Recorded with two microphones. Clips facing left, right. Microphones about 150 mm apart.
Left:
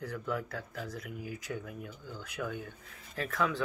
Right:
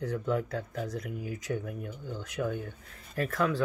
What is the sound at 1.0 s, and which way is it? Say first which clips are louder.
Speech: right 4 dB; 5° left (ahead or behind).